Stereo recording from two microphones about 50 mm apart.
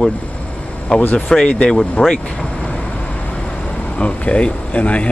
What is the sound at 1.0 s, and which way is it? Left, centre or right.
Speech, left.